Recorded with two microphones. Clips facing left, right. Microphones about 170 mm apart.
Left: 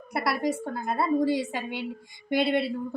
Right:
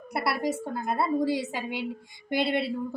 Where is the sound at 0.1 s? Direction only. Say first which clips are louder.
Left 1 dB; 5° right (ahead or behind).